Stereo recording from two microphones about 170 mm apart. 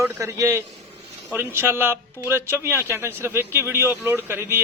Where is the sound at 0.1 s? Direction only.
15° right (ahead or behind).